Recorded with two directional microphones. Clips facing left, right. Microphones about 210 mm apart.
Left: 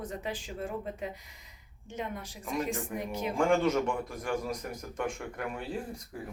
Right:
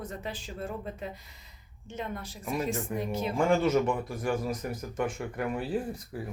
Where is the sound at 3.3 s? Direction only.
5° right (ahead or behind).